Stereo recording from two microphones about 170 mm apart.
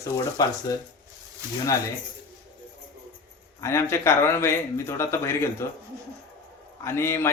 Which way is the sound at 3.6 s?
15° left (ahead or behind).